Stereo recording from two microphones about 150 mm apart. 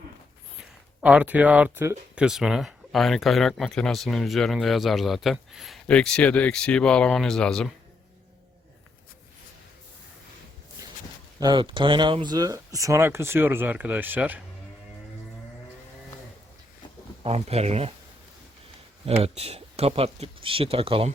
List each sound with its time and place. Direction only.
1.0 s speech: 10° right (ahead or behind)
2.1 s speech: 5° right (ahead or behind)
10.8 s walk: 20° right (ahead or behind)
11.3 s speech: 30° right (ahead or behind); by 14.4 s 10° right (ahead or behind)
17.2 s speech: 45° right (ahead or behind)
19.0 s speech: 40° right (ahead or behind)